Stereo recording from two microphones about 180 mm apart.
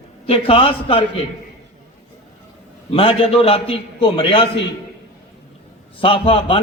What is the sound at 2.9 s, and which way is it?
A man's voice, 30° left (ahead or behind).